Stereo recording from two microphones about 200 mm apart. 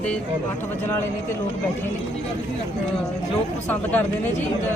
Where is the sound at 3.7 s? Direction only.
10° left (ahead or behind).